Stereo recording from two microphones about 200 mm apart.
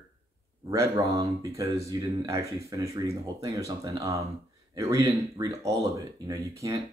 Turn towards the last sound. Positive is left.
turn(degrees=-15)  # may be behind; listen again after turning